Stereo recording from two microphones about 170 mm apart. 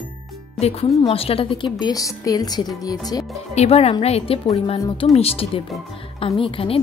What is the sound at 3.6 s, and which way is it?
A woman's voice, 35° left (ahead or behind).